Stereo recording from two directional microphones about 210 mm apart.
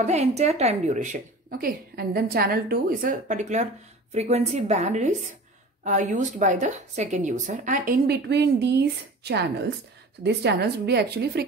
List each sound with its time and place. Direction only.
0.0 s a woman's voice: 30° right (ahead or behind); by 11.4 s 50° right (ahead or behind)